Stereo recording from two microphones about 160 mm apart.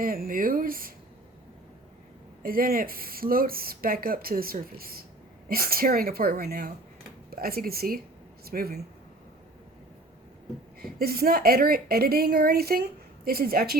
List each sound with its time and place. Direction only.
0.0 s speech: 65° right (ahead or behind)
2.4 s a woman's voice: 65° right (ahead or behind)
10.8 s a woman's voice: 70° right (ahead or behind)